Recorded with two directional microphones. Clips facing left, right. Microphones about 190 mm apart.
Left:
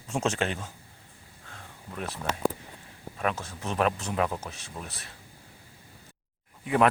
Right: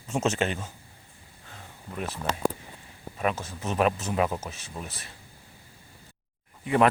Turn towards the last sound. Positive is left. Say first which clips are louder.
# right 1 dB
turn(degrees=0)  # may be behind; listen again after turning